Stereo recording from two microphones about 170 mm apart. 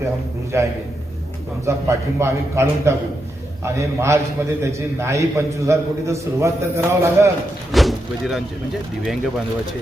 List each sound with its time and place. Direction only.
0.5 s a man's voice: 15° right (ahead or behind)
7.7 s slam: centre (ahead or behind)